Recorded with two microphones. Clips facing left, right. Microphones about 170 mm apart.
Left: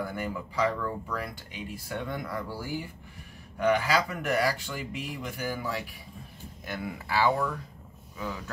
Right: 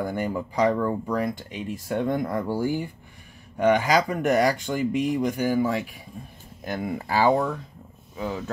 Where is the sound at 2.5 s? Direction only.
30° right (ahead or behind).